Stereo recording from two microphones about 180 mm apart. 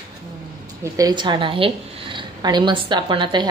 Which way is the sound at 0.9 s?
20° right (ahead or behind).